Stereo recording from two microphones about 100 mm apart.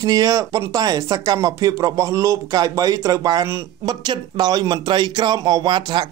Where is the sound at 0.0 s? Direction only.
40° right (ahead or behind).